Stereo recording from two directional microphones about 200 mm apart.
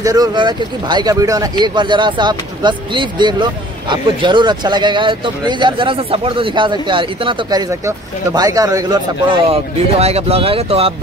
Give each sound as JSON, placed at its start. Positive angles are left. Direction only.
{"t": 0.0, "sound": "speech", "side_deg": -20}